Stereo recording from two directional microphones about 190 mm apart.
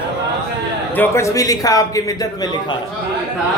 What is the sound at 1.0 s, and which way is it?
A man's voice, 15° left (ahead or behind).